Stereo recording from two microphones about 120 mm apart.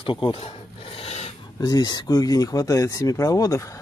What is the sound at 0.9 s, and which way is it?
Dog, 60° left (ahead or behind).